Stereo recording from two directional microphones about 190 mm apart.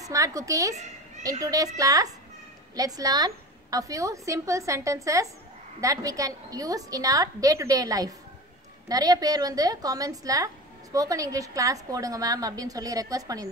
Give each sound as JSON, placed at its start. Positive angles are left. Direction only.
{"t": 0.0, "sound": "a woman's voice", "side_deg": -15}